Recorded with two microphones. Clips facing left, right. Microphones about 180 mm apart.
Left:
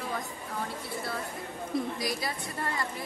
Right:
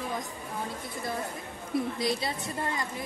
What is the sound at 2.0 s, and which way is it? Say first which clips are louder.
Speech: right 3 dB; 25° right (ahead or behind).